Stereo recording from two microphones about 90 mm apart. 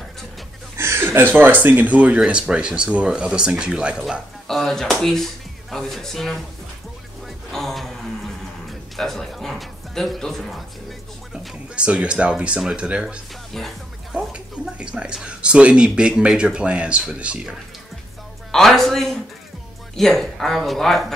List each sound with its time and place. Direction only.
0.7 s a sound: 30° right (ahead or behind)
1.3 s speech: 20° right (ahead or behind)
4.5 s speech: 5° left (ahead or behind)
7.5 s music: centre (ahead or behind)
8.9 s a man's voice: 5° left (ahead or behind)
11.3 s speech: 10° right (ahead or behind)
13.5 s music: centre (ahead or behind)
14.3 s speech: 10° right (ahead or behind)
18.5 s speech: 5° left (ahead or behind)